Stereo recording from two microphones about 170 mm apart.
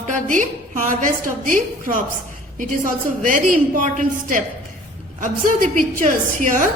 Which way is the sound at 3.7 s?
50° right (ahead or behind).